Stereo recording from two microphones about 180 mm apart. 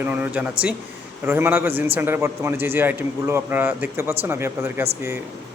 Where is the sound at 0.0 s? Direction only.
10° right (ahead or behind).